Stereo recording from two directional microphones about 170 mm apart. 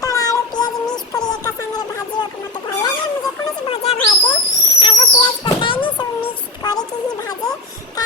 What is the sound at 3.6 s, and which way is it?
Speech, 35° left (ahead or behind).